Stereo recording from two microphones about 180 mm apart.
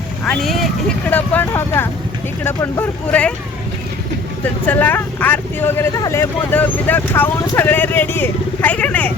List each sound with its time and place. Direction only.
0.3 s speech: centre (ahead or behind)
4.6 s speech: 10° left (ahead or behind)